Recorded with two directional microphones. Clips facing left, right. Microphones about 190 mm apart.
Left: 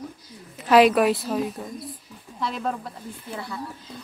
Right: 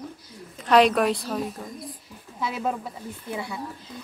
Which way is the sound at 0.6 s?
5° left (ahead or behind).